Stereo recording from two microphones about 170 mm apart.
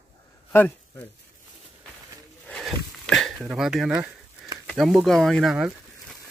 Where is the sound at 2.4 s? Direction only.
5° left (ahead or behind).